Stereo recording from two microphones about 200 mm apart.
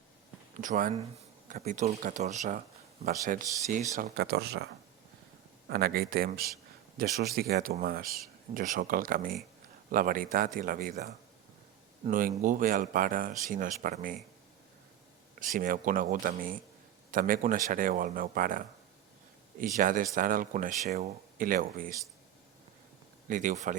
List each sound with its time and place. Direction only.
0.6 s speech: 40° right (ahead or behind)
15.4 s speech: 45° right (ahead or behind)
23.3 s speech: 40° right (ahead or behind)